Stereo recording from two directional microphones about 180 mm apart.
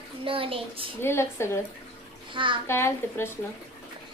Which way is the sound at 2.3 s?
30° right (ahead or behind).